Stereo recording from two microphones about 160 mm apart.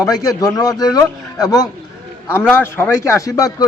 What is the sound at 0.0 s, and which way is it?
A man's voice, 25° left (ahead or behind).